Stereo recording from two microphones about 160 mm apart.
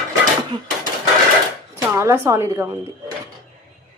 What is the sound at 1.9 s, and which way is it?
Speech, 15° right (ahead or behind).